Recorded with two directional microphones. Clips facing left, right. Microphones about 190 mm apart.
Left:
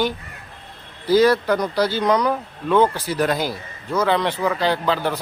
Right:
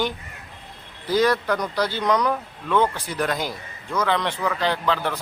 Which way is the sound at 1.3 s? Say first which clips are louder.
Left 4 dB; 35° left (ahead or behind).